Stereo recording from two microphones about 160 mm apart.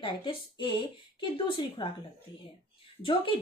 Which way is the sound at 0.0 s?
30° left (ahead or behind).